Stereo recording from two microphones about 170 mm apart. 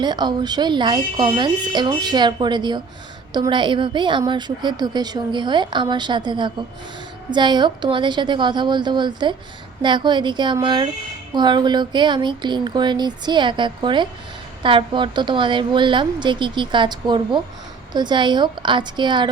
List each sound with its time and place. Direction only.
0.0 s a woman's voice: 25° right (ahead or behind)